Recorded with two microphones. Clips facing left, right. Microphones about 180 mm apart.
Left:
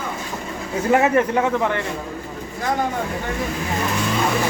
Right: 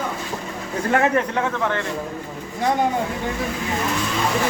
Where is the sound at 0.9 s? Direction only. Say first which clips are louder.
Left 2 dB; 5° left (ahead or behind).